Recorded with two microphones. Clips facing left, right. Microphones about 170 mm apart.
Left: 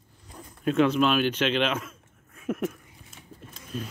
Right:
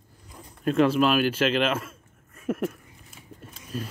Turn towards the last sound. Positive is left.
turn(degrees=-5)  # may be behind; listen again after turning